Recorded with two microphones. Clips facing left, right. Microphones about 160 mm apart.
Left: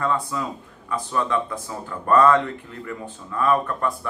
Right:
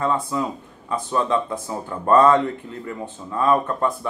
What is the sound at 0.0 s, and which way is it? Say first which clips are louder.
Speech: right 2 dB; 25° right (ahead or behind).